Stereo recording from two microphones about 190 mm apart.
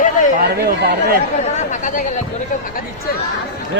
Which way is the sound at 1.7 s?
40° left (ahead or behind).